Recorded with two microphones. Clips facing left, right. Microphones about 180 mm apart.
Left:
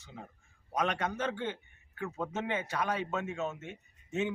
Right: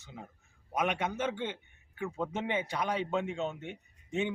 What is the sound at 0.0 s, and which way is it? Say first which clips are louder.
A man's voice: even; 10° right (ahead or behind).